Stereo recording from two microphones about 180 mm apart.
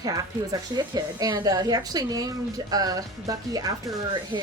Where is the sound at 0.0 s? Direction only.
20° right (ahead or behind).